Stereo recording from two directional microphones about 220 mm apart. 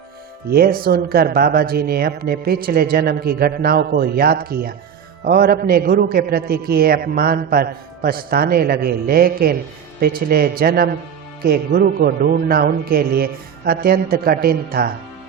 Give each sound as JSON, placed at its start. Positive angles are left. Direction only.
{"t": 0.5, "sound": "a man's voice", "side_deg": -45}